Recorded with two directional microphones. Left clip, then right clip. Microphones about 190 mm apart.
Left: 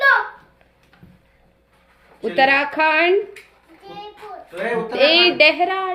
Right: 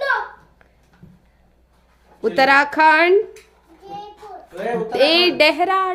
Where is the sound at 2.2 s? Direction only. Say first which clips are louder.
Right 2 dB; 25° right (ahead or behind).